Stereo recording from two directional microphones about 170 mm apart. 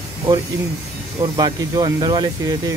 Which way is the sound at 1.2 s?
25° right (ahead or behind).